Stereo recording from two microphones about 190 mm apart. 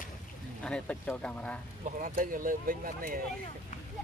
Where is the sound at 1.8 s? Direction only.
45° right (ahead or behind).